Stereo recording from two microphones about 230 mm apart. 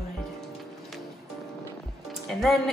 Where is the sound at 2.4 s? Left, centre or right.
Centre.